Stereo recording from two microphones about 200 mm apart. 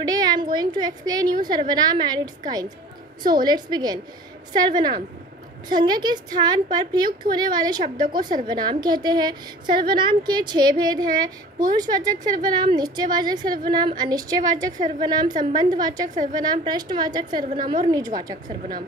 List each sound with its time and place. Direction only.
0.0 s a sound: 20° right (ahead or behind)
1.4 s a woman's voice: 20° right (ahead or behind)
3.4 s a woman's voice: 20° right (ahead or behind)
17.6 s a woman's voice: 35° right (ahead or behind)
17.9 s a woman's voice: 20° right (ahead or behind)